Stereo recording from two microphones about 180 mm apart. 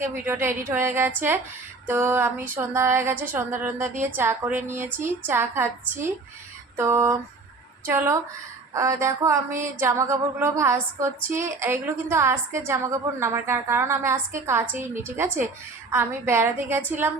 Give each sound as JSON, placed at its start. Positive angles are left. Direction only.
{"t": 0.0, "sound": "a woman's voice", "side_deg": -15}
{"t": 6.7, "sound": "a woman's voice", "side_deg": -15}